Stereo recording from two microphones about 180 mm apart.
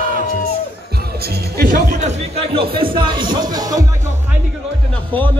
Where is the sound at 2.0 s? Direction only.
35° right (ahead or behind); by 3.8 s 20° right (ahead or behind).